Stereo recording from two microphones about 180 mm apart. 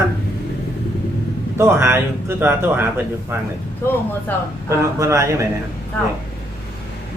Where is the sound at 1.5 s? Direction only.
15° right (ahead or behind).